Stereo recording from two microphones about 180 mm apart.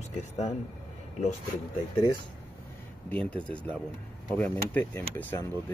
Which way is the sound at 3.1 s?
10° left (ahead or behind).